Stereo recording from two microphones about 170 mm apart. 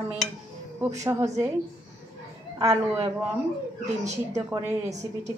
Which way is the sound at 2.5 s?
20° right (ahead or behind).